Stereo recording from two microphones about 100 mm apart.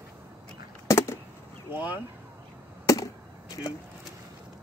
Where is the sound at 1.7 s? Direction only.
15° right (ahead or behind).